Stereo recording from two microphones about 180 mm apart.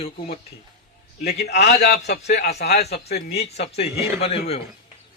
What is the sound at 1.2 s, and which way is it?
A man's voice, 65° left (ahead or behind).